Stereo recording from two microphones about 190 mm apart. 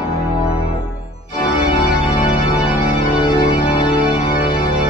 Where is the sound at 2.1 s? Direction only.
25° left (ahead or behind).